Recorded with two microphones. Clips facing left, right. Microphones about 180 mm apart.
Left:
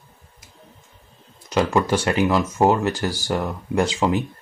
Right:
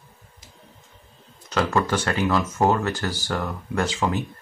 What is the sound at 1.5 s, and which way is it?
Speech, 15° left (ahead or behind).